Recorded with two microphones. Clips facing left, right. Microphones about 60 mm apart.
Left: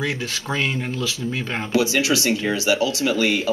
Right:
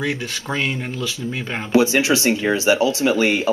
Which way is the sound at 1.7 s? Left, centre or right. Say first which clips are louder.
Right 4 dB; right.